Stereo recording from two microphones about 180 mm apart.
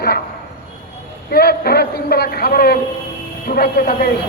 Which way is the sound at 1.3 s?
60° left (ahead or behind).